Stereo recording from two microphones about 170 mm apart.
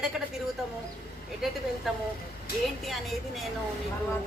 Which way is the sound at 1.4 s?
Centre (ahead or behind).